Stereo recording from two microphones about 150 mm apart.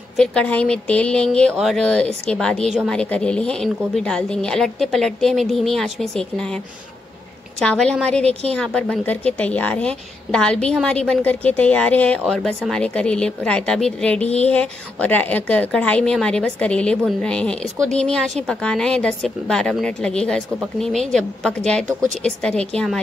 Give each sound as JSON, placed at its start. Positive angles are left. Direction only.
{"t": 0.2, "sound": "a woman's voice", "side_deg": 5}
{"t": 7.6, "sound": "a woman's voice", "side_deg": 5}
{"t": 14.2, "sound": "a sound", "side_deg": 45}
{"t": 14.5, "sound": "a woman's voice", "side_deg": 10}